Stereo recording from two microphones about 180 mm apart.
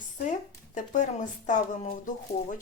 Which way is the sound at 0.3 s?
45° left (ahead or behind).